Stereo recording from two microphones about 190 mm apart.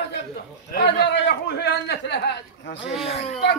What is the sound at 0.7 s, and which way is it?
A man's voice, 60° left (ahead or behind).